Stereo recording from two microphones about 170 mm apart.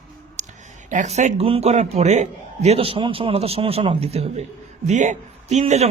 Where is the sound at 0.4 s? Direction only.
45° right (ahead or behind).